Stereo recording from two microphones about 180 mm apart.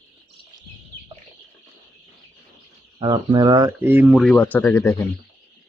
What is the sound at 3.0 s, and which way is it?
Speech, 25° right (ahead or behind).